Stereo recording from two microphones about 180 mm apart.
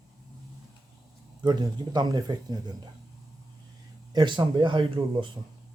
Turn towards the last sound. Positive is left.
turn(degrees=-25)  # may be behind; listen again after turning